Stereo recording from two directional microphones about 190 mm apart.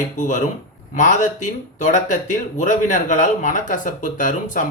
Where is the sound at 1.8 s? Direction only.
40° left (ahead or behind).